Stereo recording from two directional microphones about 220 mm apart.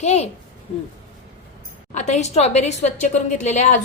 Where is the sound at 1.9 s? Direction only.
30° left (ahead or behind).